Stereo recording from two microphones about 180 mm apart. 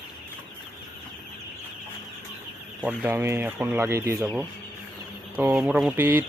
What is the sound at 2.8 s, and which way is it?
Speech, 10° right (ahead or behind).